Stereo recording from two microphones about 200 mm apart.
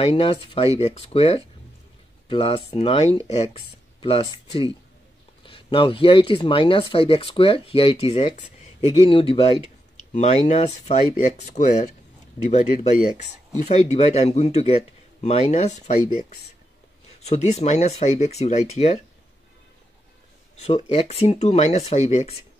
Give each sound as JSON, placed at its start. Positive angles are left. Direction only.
{"t": 0.0, "sound": "speech", "side_deg": 30}
{"t": 5.4, "sound": "speech", "side_deg": 25}
{"t": 13.1, "sound": "speech", "side_deg": -20}
{"t": 13.7, "sound": "speech", "side_deg": 35}
{"t": 17.2, "sound": "speech", "side_deg": 35}
{"t": 20.6, "sound": "speech", "side_deg": 30}